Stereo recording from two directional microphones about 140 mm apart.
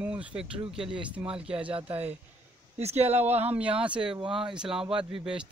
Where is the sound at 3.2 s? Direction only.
15° right (ahead or behind).